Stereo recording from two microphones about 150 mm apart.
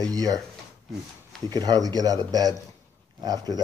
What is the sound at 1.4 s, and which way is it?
Speech, 25° right (ahead or behind).